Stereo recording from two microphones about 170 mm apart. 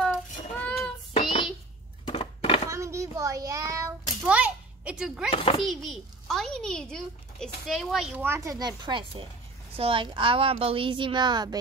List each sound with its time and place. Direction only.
0.0 s child singing: 5° left (ahead or behind)
2.0 s a sound: 30° left (ahead or behind)
2.7 s child singing: 15° right (ahead or behind)
4.2 s a sound: 5° right (ahead or behind)
5.3 s a child's voice: 35° left (ahead or behind)
5.6 s a child's voice: centre (ahead or behind); by 11.5 s 25° right (ahead or behind)